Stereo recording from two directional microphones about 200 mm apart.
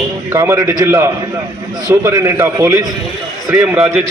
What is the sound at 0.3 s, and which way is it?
A man's voice, 15° right (ahead or behind).